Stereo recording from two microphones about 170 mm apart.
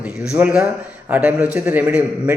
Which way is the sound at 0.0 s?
5° right (ahead or behind).